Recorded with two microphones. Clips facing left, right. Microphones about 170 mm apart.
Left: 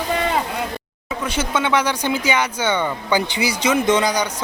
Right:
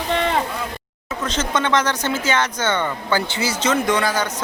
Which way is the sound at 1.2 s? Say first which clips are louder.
Even; 10° left (ahead or behind).